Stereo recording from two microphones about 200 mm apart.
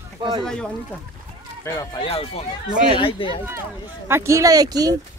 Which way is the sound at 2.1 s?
30° left (ahead or behind).